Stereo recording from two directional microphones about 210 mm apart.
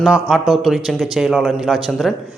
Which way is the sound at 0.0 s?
Centre (ahead or behind).